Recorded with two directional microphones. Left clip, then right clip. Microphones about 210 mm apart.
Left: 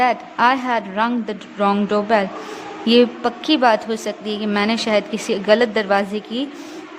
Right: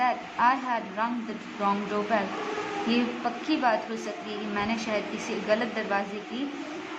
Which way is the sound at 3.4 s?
50° left (ahead or behind).